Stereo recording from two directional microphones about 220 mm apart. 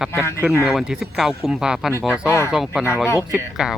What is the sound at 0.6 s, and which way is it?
Speech, centre (ahead or behind).